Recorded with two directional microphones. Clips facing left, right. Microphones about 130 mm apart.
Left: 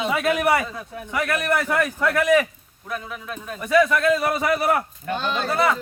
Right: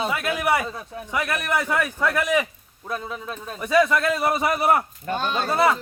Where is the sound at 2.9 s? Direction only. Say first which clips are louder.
Right 1 dB; 30° right (ahead or behind).